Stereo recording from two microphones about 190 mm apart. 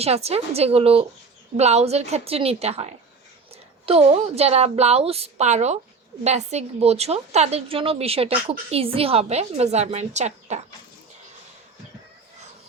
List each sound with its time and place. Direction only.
0.0 s a woman's voice: 35° right (ahead or behind)